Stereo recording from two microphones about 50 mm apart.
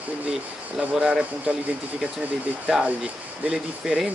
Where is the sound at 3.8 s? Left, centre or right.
Centre.